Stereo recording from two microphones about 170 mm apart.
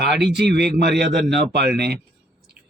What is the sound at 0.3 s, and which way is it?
Speech, 75° right (ahead or behind).